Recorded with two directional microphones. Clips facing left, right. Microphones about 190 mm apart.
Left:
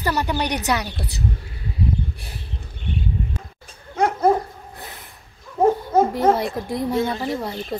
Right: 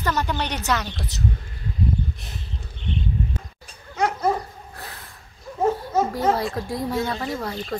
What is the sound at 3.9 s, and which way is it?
Dog, 55° left (ahead or behind).